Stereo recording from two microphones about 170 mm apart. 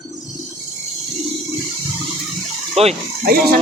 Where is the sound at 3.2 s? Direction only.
60° right (ahead or behind).